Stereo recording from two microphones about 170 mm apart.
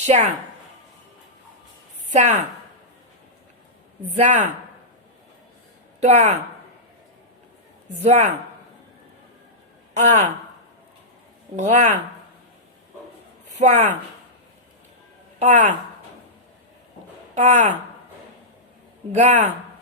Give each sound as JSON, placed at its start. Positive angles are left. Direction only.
{"t": 0.0, "sound": "a woman's voice", "side_deg": -40}
{"t": 2.1, "sound": "a woman's voice", "side_deg": -40}
{"t": 4.2, "sound": "a woman's voice", "side_deg": -45}
{"t": 6.0, "sound": "a woman's voice", "side_deg": -40}
{"t": 8.0, "sound": "a woman's voice", "side_deg": -40}
{"t": 9.9, "sound": "speech", "side_deg": -45}
{"t": 11.5, "sound": "a woman's voice", "side_deg": -45}
{"t": 13.6, "sound": "a woman's voice", "side_deg": -45}
{"t": 15.4, "sound": "a woman's voice", "side_deg": -45}
{"t": 17.3, "sound": "a woman's voice", "side_deg": -45}
{"t": 19.1, "sound": "a woman's voice", "side_deg": -45}